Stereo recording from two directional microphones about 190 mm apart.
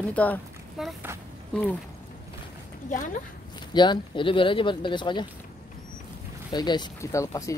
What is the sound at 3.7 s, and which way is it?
Speech, 25° left (ahead or behind).